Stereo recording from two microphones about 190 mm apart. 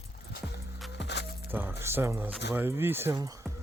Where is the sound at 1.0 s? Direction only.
65° left (ahead or behind).